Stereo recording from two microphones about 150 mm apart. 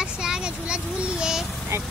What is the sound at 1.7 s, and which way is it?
Speech, 20° right (ahead or behind).